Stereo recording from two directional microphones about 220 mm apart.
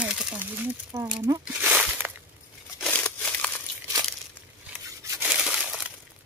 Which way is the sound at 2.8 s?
5° left (ahead or behind).